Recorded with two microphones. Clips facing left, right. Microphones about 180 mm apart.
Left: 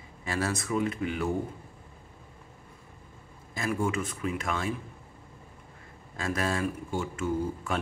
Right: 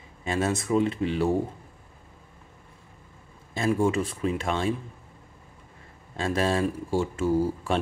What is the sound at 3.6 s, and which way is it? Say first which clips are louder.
Speech: right 6 dB; 30° right (ahead or behind).